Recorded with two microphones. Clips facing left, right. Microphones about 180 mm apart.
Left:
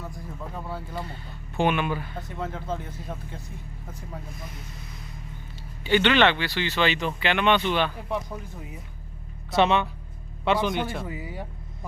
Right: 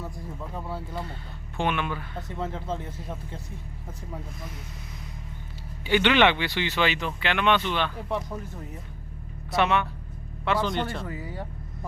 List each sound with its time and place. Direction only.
0.5 s speech: centre (ahead or behind)
2.2 s speech: 25° right (ahead or behind)
5.8 s speech: 10° right (ahead or behind)
9.6 s a man's voice: 25° left (ahead or behind)
10.7 s speech: 10° left (ahead or behind)